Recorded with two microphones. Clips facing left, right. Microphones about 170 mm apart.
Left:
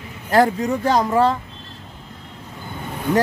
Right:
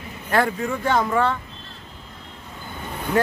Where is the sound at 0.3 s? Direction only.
40° left (ahead or behind).